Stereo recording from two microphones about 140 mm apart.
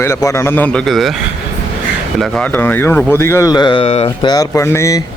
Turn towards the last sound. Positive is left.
turn(degrees=20)  # may be behind; listen again after turning